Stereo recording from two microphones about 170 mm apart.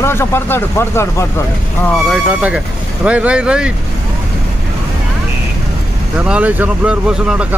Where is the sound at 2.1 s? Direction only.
10° right (ahead or behind).